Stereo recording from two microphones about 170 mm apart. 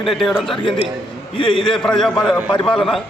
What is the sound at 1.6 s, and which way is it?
A man's voice, 5° left (ahead or behind).